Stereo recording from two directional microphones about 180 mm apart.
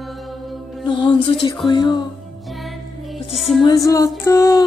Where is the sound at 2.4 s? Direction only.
Centre (ahead or behind).